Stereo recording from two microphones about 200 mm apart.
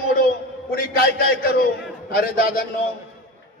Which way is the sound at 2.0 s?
50° left (ahead or behind).